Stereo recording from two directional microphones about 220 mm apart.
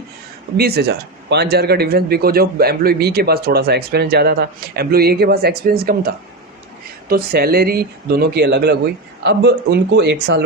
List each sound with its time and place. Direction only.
0.5 s a man's voice: 45° right (ahead or behind)